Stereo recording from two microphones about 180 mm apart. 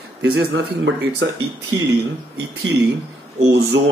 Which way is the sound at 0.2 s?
75° right (ahead or behind).